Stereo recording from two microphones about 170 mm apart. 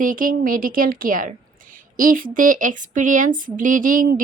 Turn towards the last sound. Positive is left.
turn(degrees=-55)  # may be behind; listen again after turning